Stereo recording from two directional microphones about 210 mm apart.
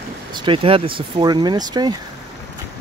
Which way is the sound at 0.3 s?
20° right (ahead or behind).